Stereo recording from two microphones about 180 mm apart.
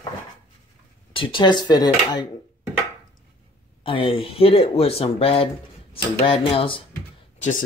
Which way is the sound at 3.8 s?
30° left (ahead or behind).